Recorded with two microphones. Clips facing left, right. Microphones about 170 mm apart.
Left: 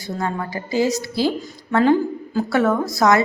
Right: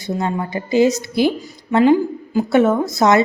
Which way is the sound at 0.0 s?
20° right (ahead or behind).